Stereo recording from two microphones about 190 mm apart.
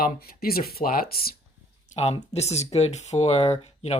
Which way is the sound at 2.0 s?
35° left (ahead or behind).